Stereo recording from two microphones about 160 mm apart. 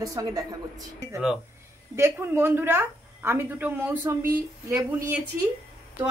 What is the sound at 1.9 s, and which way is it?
A woman's voice, 15° right (ahead or behind).